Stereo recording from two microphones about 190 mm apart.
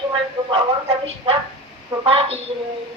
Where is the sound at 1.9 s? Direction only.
25° right (ahead or behind).